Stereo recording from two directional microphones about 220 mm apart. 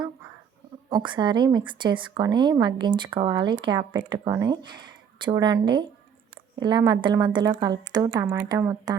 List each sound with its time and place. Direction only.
0.9 s a woman's voice: 20° right (ahead or behind)